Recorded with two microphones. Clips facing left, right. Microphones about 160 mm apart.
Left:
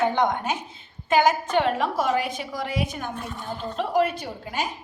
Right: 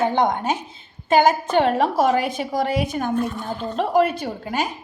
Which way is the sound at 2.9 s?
45° right (ahead or behind).